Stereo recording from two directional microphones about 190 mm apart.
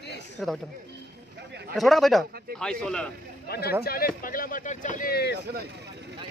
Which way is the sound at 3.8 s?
55° left (ahead or behind).